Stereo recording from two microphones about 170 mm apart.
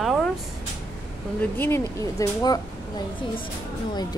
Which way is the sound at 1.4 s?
15° left (ahead or behind).